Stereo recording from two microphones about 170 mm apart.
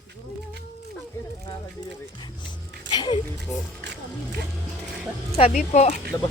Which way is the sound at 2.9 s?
25° left (ahead or behind).